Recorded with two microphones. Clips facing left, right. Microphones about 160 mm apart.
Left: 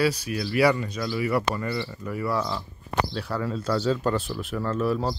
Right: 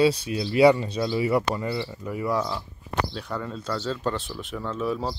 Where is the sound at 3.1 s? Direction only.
5° left (ahead or behind).